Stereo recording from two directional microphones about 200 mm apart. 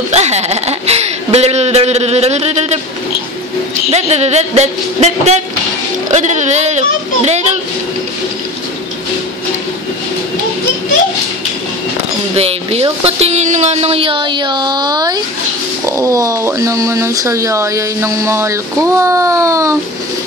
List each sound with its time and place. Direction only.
0.1 s speech: 35° right (ahead or behind)
3.9 s speech: 35° right (ahead or behind)
12.4 s speech: 30° right (ahead or behind); by 19.8 s 15° right (ahead or behind)